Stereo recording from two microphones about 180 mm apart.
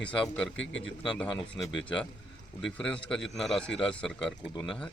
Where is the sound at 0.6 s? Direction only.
90° left.